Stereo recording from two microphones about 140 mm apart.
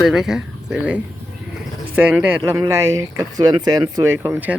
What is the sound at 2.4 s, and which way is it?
Speech, 20° right (ahead or behind).